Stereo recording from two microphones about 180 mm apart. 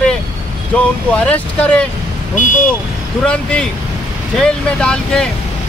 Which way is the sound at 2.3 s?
45° left (ahead or behind).